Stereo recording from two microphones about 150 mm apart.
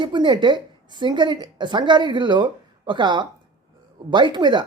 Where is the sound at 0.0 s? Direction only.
30° right (ahead or behind).